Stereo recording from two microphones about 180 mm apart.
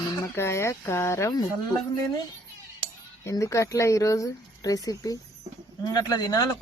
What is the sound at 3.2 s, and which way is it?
Speech, 15° left (ahead or behind).